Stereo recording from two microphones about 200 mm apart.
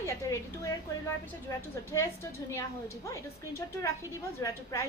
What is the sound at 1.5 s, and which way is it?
Speech, 15° left (ahead or behind).